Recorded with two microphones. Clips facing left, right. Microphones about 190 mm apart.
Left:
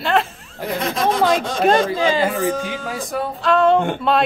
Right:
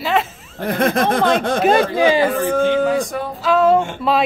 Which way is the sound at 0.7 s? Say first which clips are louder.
Right 3 dB; 55° right (ahead or behind).